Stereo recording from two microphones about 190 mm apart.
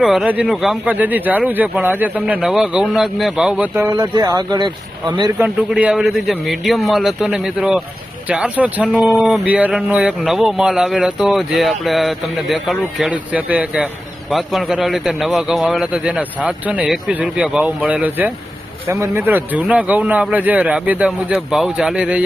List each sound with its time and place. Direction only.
0.0 s speech: centre (ahead or behind)
4.1 s speech: 20° right (ahead or behind)
5.4 s a man's voice: 5° right (ahead or behind)